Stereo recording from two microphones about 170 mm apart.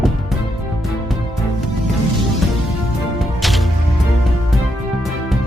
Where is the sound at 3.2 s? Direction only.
Centre (ahead or behind).